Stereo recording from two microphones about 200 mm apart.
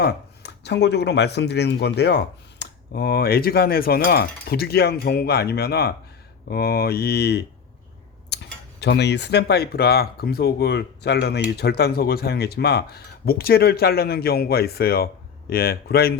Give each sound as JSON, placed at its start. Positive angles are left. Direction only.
{"t": 0.0, "sound": "speech", "side_deg": 60}